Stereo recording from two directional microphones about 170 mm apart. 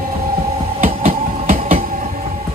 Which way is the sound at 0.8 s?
45° right (ahead or behind).